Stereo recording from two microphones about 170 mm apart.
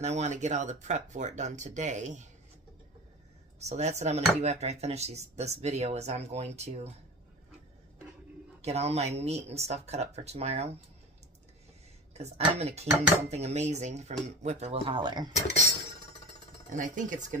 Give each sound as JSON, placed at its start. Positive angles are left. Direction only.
{"t": 0.0, "sound": "speech", "side_deg": -40}
{"t": 3.5, "sound": "speech", "side_deg": -40}
{"t": 8.6, "sound": "speech", "side_deg": -40}
{"t": 12.1, "sound": "a sound", "side_deg": -40}
{"t": 12.5, "sound": "speech", "side_deg": -40}
{"t": 16.7, "sound": "speech", "side_deg": -50}